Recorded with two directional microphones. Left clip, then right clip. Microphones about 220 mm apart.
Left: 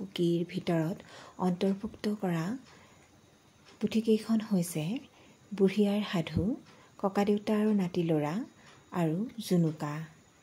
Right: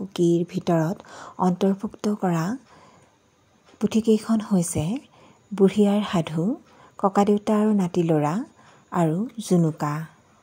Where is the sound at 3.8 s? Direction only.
25° right (ahead or behind).